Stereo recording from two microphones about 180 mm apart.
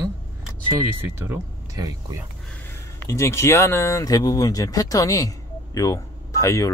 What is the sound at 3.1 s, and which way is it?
Speech, 15° left (ahead or behind).